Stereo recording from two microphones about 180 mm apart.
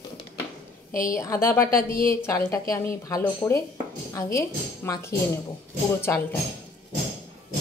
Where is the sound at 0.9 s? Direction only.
50° left (ahead or behind).